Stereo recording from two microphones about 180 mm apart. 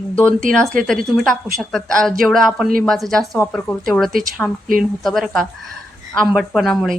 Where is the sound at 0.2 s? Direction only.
5° left (ahead or behind).